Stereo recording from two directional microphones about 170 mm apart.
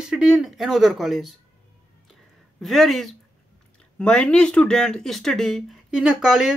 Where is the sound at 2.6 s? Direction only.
Centre (ahead or behind).